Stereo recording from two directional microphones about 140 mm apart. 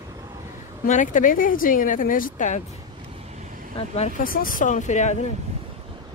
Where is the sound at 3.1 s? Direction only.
50° right (ahead or behind); by 3.7 s 65° right (ahead or behind).